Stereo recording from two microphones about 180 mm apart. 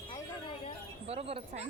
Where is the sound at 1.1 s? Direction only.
35° right (ahead or behind).